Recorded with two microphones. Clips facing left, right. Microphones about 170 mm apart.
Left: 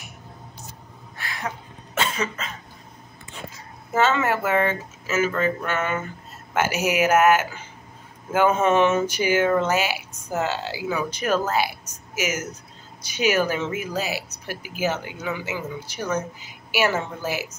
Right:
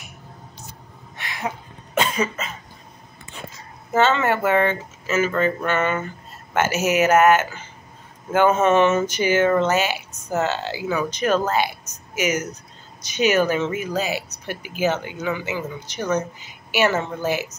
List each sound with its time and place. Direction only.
1.1 s a sound: 20° right (ahead or behind)
2.0 s cough: 10° right (ahead or behind)
3.9 s speech: 5° left (ahead or behind)